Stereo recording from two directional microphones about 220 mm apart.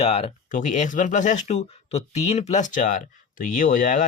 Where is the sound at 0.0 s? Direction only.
30° left (ahead or behind).